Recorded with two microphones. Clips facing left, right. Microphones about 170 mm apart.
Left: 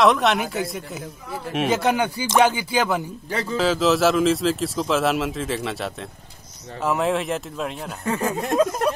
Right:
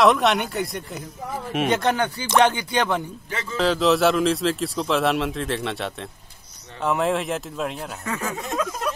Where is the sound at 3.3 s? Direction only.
35° left (ahead or behind).